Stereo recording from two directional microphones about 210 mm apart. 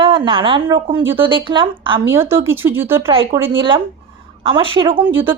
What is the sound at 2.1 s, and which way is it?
Speech, 10° right (ahead or behind).